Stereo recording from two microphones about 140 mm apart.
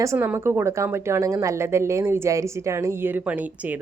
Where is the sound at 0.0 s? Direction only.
20° right (ahead or behind).